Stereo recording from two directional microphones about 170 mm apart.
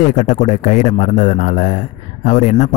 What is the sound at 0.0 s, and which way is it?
Speech, 45° left (ahead or behind).